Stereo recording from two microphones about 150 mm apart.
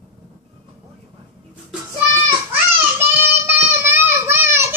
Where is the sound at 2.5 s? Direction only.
15° right (ahead or behind).